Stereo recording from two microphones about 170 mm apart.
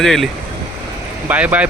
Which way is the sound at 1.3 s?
10° right (ahead or behind).